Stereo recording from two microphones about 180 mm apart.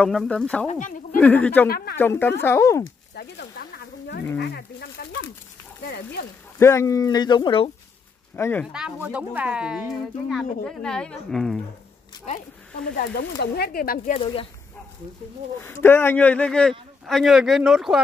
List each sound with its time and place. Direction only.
0.0 s speech: 5° left (ahead or behind)
0.7 s speech: 45° left (ahead or behind)
1.1 s speech: 10° left (ahead or behind)
1.7 s speech: 60° left (ahead or behind)
2.0 s speech: 10° left (ahead or behind)
3.2 s speech: 60° left (ahead or behind)
6.6 s speech: 15° left (ahead or behind)
8.4 s speech: 10° left (ahead or behind)
8.7 s speech: 5° right (ahead or behind)
13.2 s speech: 60° left (ahead or behind)
14.1 s speech: 30° left (ahead or behind)
15.6 s speech: 10° left (ahead or behind); by 18.0 s 5° right (ahead or behind)